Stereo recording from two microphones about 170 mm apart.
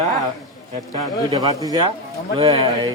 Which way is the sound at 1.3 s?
20° right (ahead or behind).